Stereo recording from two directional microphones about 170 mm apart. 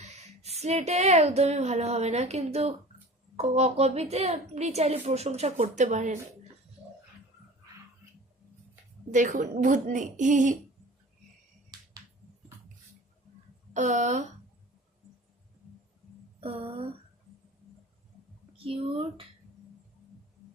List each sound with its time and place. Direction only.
0.0 s a woman's voice: 40° right (ahead or behind)
9.1 s a woman's voice: 45° right (ahead or behind)
13.7 s a woman's voice: 45° right (ahead or behind)
16.4 s a woman's voice: 35° right (ahead or behind)
18.5 s a child's voice: 35° right (ahead or behind)